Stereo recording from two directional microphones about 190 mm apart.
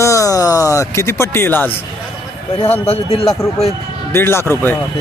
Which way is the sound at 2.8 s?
30° left (ahead or behind).